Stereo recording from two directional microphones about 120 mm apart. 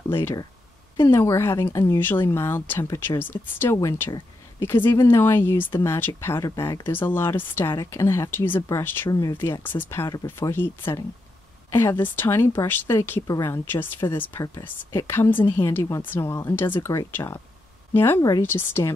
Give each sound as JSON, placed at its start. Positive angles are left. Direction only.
{"t": 0.1, "sound": "speech", "side_deg": 20}